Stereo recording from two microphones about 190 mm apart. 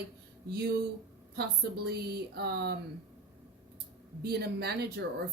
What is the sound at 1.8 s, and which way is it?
Speech, 55° right (ahead or behind).